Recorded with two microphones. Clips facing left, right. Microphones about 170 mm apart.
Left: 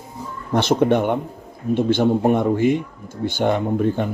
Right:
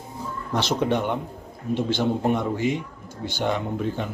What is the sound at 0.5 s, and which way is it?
Speech, 55° left (ahead or behind).